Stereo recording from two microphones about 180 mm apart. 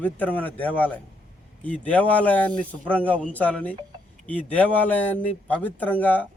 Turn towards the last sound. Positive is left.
turn(degrees=10)  # may be behind; listen again after turning